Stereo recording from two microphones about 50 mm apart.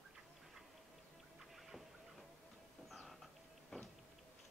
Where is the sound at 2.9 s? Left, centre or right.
Centre.